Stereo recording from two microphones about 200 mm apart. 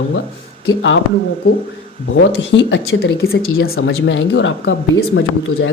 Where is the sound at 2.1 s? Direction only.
65° left (ahead or behind).